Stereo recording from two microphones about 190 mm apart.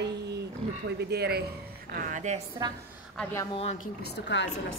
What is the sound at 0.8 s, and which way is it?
Speech, 60° right (ahead or behind).